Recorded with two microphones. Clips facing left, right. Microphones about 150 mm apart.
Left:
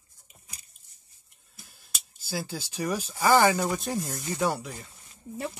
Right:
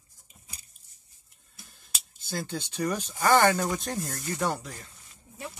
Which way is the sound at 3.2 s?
5° left (ahead or behind).